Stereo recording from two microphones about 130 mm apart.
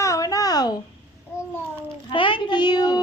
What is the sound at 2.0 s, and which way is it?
Speech, 40° left (ahead or behind).